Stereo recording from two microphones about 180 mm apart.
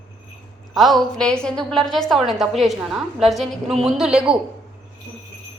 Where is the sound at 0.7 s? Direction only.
Centre (ahead or behind).